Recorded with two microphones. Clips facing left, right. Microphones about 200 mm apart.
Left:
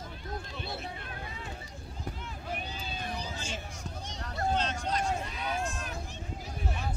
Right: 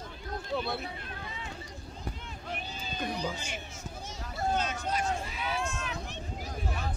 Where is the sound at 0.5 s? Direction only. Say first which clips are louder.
Right 7 dB; 60° right (ahead or behind).